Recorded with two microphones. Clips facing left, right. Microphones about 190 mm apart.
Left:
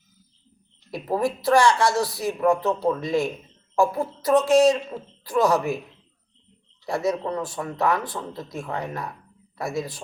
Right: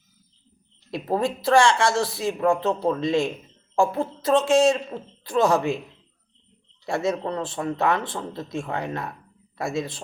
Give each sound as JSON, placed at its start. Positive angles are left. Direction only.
{"t": 0.9, "sound": "speech", "side_deg": -25}
{"t": 6.8, "sound": "speech", "side_deg": -25}